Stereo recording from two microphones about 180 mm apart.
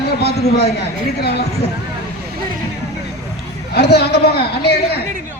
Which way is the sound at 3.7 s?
65° left (ahead or behind).